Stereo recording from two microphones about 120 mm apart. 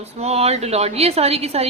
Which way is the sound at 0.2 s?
60° right (ahead or behind).